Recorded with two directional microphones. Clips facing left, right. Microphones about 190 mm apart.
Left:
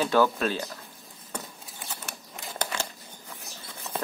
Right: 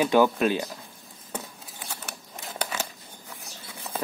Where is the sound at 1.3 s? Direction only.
Centre (ahead or behind).